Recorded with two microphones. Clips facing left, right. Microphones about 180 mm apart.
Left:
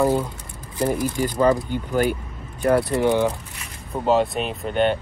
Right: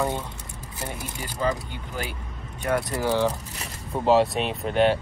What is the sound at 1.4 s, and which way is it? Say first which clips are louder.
Speech: left 7 dB; 45° left (ahead or behind).